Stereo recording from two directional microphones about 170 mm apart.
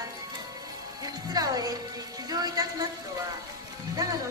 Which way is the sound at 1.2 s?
20° right (ahead or behind).